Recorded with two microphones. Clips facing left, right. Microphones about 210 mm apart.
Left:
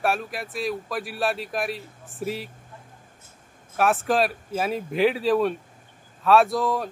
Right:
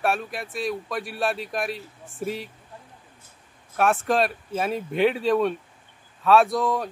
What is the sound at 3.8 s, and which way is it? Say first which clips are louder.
Speech: even; centre (ahead or behind).